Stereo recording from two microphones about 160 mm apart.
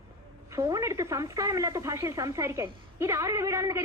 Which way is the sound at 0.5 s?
20° right (ahead or behind).